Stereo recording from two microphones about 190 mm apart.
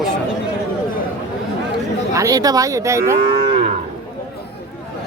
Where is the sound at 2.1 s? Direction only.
20° right (ahead or behind).